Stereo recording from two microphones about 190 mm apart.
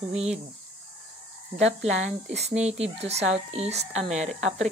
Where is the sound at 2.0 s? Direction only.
35° right (ahead or behind).